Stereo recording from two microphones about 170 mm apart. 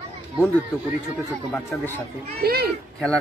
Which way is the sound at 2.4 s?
65° right (ahead or behind).